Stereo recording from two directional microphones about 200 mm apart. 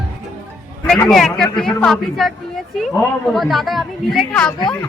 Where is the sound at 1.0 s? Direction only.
Centre (ahead or behind).